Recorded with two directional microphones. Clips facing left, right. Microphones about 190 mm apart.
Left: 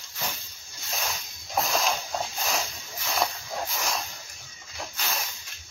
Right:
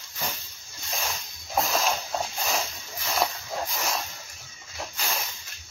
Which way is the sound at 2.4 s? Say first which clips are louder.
Right 1 dB; centre (ahead or behind).